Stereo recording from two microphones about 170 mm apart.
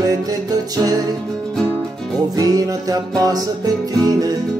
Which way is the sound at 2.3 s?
20° right (ahead or behind).